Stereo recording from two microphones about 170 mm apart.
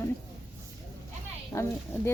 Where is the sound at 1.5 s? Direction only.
20° left (ahead or behind).